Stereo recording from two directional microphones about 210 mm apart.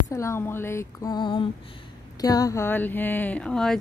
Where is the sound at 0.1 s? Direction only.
15° left (ahead or behind).